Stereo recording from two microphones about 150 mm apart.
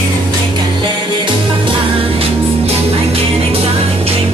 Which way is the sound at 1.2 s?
35° right (ahead or behind).